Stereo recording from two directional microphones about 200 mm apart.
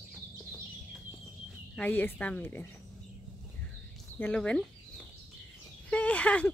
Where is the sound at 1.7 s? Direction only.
10° left (ahead or behind).